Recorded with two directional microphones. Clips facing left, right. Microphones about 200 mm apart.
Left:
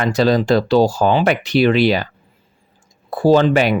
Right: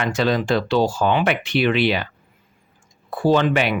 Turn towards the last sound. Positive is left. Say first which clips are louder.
# left 5 dB
turn(degrees=35)  # may be behind; listen again after turning